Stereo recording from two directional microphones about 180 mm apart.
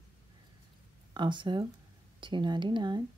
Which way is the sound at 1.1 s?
25° right (ahead or behind).